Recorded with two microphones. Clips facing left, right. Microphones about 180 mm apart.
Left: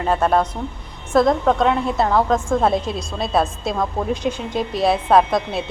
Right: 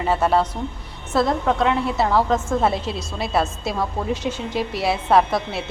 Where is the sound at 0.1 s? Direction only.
10° right (ahead or behind).